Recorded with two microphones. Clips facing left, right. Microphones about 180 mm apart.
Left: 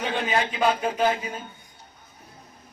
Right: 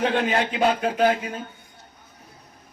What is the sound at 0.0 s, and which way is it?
A man's voice, 70° right (ahead or behind).